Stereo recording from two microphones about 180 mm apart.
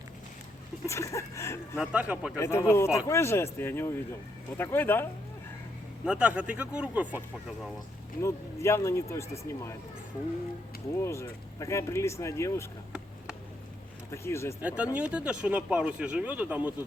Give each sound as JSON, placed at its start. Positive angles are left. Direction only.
{"t": 0.9, "sound": "speech", "side_deg": 15}
{"t": 1.8, "sound": "speech", "side_deg": -5}
{"t": 2.4, "sound": "speech", "side_deg": 15}
{"t": 6.1, "sound": "speech", "side_deg": -5}
{"t": 8.2, "sound": "speech", "side_deg": 15}
{"t": 11.0, "sound": "speech", "side_deg": 15}
{"t": 14.1, "sound": "speech", "side_deg": 15}
{"t": 14.6, "sound": "speech", "side_deg": -5}